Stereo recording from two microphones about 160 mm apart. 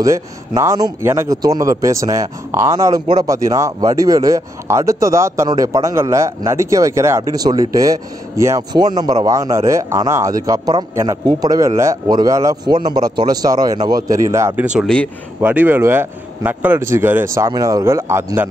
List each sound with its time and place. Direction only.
0.0 s speech: 20° right (ahead or behind)